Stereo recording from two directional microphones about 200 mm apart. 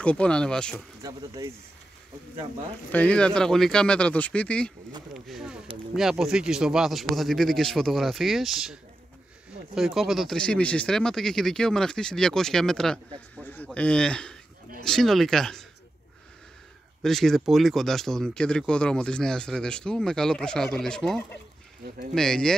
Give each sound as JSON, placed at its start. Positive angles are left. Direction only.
{"t": 0.0, "sound": "speech", "side_deg": 5}
{"t": 1.0, "sound": "speech", "side_deg": -20}
{"t": 2.9, "sound": "speech", "side_deg": 5}
{"t": 9.8, "sound": "speech", "side_deg": 0}
{"t": 17.0, "sound": "speech", "side_deg": 0}